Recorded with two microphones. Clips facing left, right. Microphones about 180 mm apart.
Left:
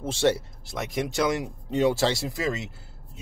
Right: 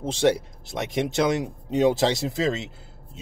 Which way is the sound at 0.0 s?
15° right (ahead or behind).